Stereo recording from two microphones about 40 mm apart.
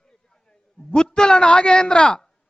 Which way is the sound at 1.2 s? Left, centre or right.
Left.